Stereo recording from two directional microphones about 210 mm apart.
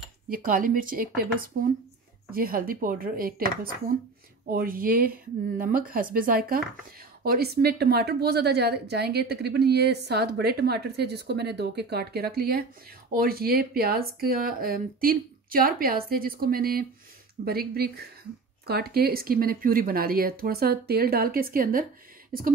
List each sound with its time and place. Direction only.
0.3 s a woman's voice: 40° right (ahead or behind)
4.5 s a woman's voice: 45° right (ahead or behind)